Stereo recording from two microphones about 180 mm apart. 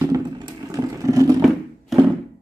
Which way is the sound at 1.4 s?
Centre (ahead or behind).